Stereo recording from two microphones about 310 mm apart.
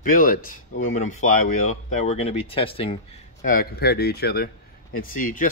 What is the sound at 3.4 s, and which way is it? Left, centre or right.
Speech, left.